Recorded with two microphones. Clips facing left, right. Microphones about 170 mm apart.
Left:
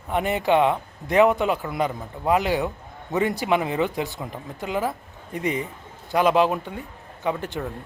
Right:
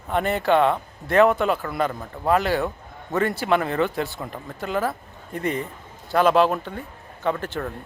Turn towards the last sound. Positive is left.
turn(degrees=15)  # may be behind; listen again after turning